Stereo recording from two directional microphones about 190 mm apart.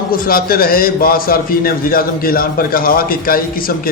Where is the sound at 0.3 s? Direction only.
50° left (ahead or behind).